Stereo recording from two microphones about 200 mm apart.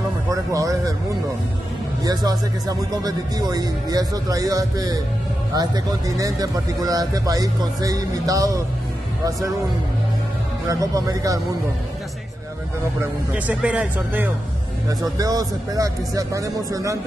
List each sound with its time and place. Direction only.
0.3 s speech: 15° right (ahead or behind)
2.0 s speech: 20° right (ahead or behind)
10.7 s speech: 15° right (ahead or behind)
13.0 s speech: 5° right (ahead or behind)